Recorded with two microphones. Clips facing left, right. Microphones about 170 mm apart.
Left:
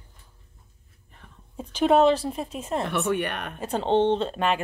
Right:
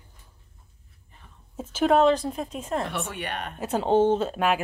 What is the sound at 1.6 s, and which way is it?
Speech, 5° right (ahead or behind).